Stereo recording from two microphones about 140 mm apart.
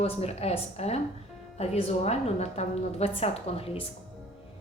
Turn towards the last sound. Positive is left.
turn(degrees=45)  # may be behind; listen again after turning